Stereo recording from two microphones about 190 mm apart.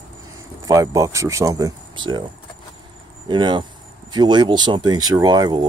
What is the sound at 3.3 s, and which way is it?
Speech, 25° right (ahead or behind).